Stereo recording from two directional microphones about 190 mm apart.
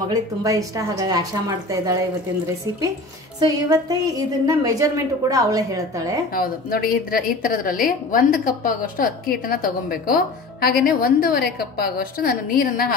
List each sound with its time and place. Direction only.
0.1 s a woman's voice: 20° right (ahead or behind)
3.3 s a woman's voice: 20° right (ahead or behind)
6.3 s a woman's voice: 50° left (ahead or behind)